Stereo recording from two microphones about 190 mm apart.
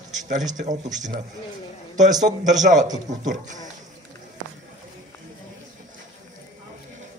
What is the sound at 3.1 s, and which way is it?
Speech, 40° right (ahead or behind).